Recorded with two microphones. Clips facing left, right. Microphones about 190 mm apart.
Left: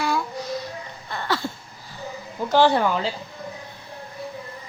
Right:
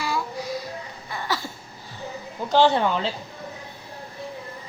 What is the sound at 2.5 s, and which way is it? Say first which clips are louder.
Whimper: left 1 dB; 20° right (ahead or behind).